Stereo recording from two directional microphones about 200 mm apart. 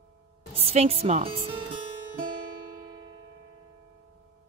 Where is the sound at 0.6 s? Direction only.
30° right (ahead or behind).